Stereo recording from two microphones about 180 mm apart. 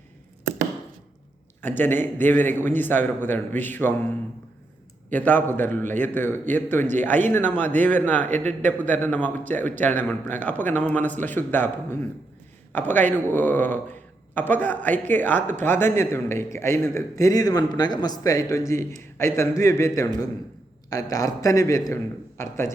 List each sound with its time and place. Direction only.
1.6 s a man's voice: 10° left (ahead or behind)
5.1 s a man's voice: 10° left (ahead or behind)
12.7 s a man's voice: 10° left (ahead or behind)
15.4 s speech: 45° right (ahead or behind)
15.6 s a man's voice: 10° left (ahead or behind)